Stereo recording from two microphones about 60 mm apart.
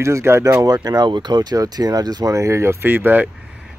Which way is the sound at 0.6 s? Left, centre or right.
Right.